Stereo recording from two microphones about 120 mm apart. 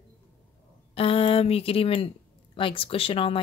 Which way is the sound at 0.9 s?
55° left (ahead or behind).